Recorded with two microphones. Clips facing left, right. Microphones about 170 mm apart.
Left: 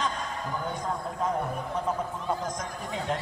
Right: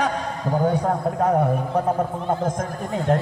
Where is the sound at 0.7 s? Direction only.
65° right (ahead or behind).